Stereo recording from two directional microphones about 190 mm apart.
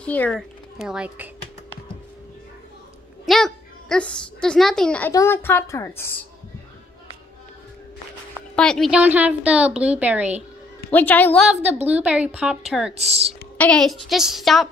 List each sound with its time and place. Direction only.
0.0 s speech: 5° left (ahead or behind)
3.3 s a woman's voice: centre (ahead or behind)
8.5 s a woman's voice: 5° left (ahead or behind)
10.9 s a woman's voice: 10° left (ahead or behind)
11.6 s a woman's voice: 10° right (ahead or behind)
12.9 s speech: 35° right (ahead or behind)
13.6 s a woman's voice: 5° left (ahead or behind)